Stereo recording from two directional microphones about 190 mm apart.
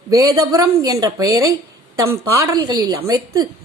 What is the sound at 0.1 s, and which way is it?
A woman's voice, 20° right (ahead or behind).